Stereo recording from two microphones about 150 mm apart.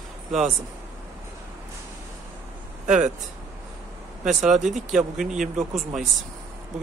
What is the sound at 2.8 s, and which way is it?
Speech, 50° right (ahead or behind).